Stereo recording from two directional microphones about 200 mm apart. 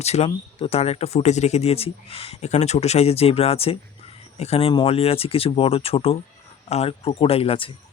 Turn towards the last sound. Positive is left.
turn(degrees=25)  # may be behind; listen again after turning